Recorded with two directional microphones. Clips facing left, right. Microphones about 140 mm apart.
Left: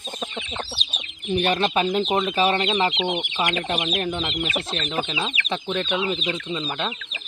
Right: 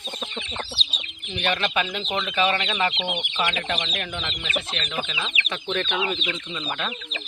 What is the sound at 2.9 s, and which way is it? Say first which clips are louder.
Speech: left 4 dB; centre (ahead or behind).